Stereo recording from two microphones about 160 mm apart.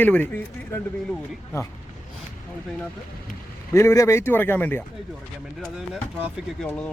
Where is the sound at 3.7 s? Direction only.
15° left (ahead or behind).